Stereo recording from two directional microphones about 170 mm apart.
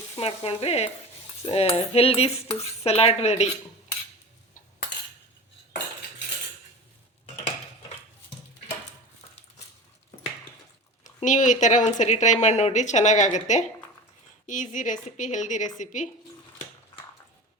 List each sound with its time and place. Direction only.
0.2 s cutlery: 35° left (ahead or behind)
11.0 s speech: 45° left (ahead or behind)